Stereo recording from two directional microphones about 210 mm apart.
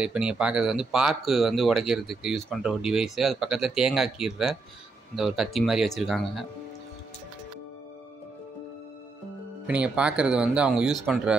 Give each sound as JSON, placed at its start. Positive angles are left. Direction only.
{"t": 0.0, "sound": "speech", "side_deg": -5}
{"t": 9.7, "sound": "speech", "side_deg": -5}